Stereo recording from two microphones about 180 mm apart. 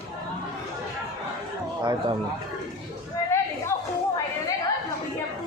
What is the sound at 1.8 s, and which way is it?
Speech, 25° right (ahead or behind).